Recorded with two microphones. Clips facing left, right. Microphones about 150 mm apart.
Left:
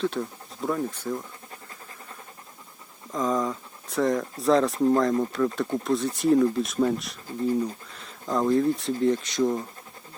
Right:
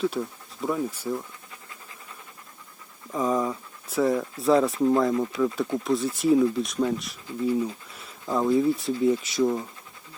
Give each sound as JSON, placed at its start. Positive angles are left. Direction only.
{"t": 0.1, "sound": "speech", "side_deg": -5}
{"t": 3.1, "sound": "speech", "side_deg": -10}